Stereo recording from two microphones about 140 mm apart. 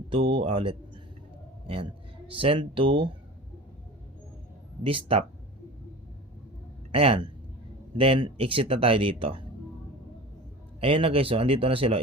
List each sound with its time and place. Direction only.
0.1 s speech: 40° right (ahead or behind)
4.8 s speech: 40° right (ahead or behind)
6.9 s a man's voice: 45° right (ahead or behind)
10.8 s speech: 40° right (ahead or behind)